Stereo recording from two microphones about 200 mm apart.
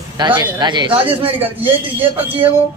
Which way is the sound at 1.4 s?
10° right (ahead or behind).